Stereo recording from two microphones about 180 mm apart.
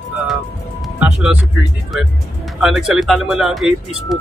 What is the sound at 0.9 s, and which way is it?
Speech, 5° right (ahead or behind).